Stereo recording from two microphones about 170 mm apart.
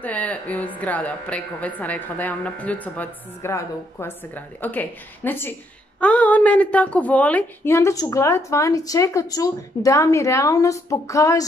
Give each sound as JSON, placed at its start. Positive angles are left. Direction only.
{"t": 0.0, "sound": "a woman's voice", "side_deg": 10}